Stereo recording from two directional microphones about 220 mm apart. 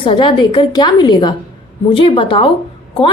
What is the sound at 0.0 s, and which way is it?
A woman's voice, 20° left (ahead or behind).